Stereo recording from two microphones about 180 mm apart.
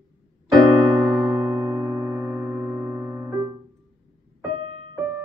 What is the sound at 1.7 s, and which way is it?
Music, 20° right (ahead or behind).